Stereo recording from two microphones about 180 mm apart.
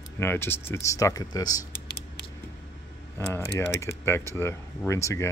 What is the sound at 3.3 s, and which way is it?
Speech, 15° left (ahead or behind).